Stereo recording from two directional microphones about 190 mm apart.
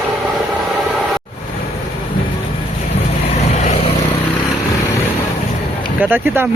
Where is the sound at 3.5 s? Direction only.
35° left (ahead or behind).